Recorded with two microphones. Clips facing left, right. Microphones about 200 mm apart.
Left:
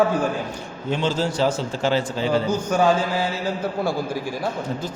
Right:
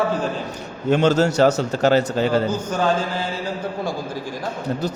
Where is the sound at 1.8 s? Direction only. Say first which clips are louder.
Right 5 dB; 40° right (ahead or behind).